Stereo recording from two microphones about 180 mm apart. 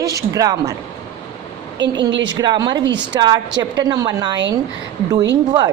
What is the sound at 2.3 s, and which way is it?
A woman's voice, 25° right (ahead or behind).